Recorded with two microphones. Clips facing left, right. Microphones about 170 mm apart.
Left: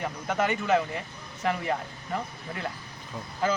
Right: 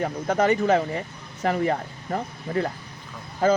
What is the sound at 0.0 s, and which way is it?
A man's voice, 40° right (ahead or behind).